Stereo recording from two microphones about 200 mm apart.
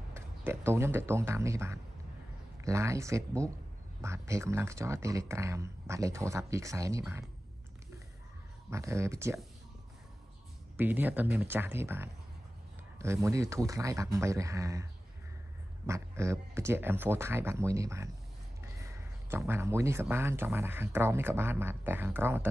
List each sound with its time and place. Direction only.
0.1 s speech: 10° right (ahead or behind)
8.6 s speech: 15° right (ahead or behind)
10.8 s speech: 10° right (ahead or behind)
15.9 s speech: 15° right (ahead or behind)